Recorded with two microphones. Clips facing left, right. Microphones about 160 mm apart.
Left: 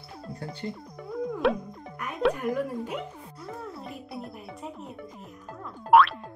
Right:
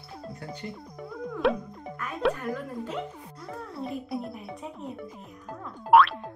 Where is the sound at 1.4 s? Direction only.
Centre (ahead or behind).